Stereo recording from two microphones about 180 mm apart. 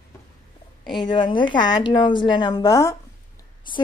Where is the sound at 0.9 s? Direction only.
25° left (ahead or behind).